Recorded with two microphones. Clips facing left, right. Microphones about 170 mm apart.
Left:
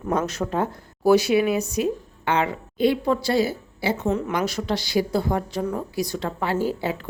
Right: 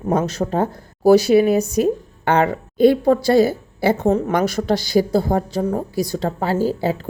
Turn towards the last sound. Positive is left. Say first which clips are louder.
# right 5 dB
turn(degrees=-35)  # may be behind; listen again after turning